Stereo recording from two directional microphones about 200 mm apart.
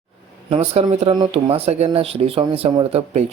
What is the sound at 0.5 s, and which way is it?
A man's voice, 30° right (ahead or behind).